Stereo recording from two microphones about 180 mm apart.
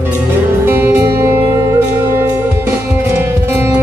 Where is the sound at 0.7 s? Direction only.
10° right (ahead or behind).